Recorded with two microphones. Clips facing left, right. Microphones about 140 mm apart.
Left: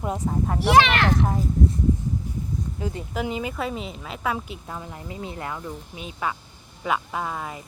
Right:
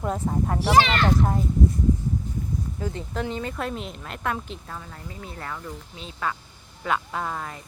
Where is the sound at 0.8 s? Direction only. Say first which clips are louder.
Left 1 dB; 70° left (ahead or behind).